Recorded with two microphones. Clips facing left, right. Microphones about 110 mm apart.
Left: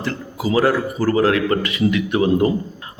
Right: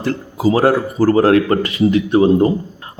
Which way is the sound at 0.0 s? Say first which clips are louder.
Right 7 dB; 40° right (ahead or behind).